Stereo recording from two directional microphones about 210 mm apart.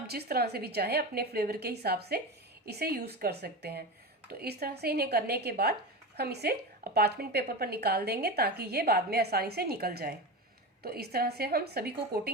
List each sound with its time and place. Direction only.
0.1 s a woman's voice: 50° right (ahead or behind)